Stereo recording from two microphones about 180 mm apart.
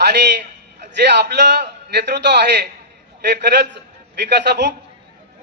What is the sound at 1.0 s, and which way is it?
A man's voice, 70° right (ahead or behind).